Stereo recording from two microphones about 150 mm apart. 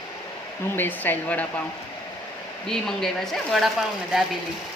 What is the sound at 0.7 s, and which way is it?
Speech, 15° left (ahead or behind).